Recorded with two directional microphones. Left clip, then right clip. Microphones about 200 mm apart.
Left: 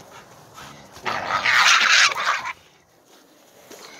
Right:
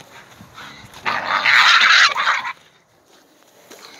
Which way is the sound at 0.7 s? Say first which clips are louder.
Right 5 dB; 15° left (ahead or behind).